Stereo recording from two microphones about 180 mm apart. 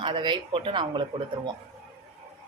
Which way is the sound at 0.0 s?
25° right (ahead or behind).